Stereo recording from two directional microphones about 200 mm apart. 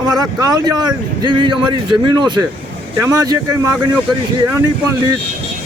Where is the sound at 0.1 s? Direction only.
20° right (ahead or behind).